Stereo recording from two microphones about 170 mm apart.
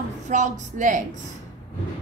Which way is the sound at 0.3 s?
45° right (ahead or behind).